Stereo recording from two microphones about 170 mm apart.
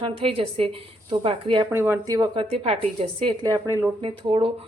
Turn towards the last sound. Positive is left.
turn(degrees=-35)  # may be behind; listen again after turning